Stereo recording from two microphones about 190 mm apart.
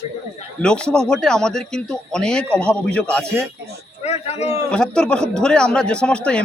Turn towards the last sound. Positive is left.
turn(degrees=5)  # may be behind; listen again after turning